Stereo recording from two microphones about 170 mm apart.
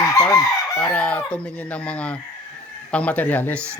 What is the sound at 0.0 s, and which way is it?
Chicken, 15° left (ahead or behind).